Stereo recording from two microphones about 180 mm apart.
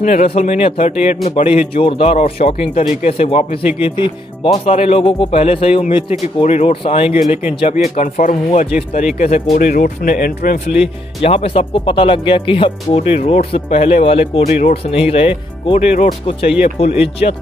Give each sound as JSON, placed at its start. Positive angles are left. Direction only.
{"t": 0.0, "sound": "speech", "side_deg": 40}
{"t": 7.8, "sound": "speech", "side_deg": 40}
{"t": 10.7, "sound": "speech", "side_deg": -5}
{"t": 11.2, "sound": "speech", "side_deg": 35}